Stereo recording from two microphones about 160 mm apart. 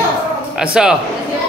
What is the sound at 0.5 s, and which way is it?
Speech, 5° right (ahead or behind).